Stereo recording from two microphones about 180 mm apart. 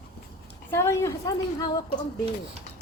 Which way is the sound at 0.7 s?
15° left (ahead or behind).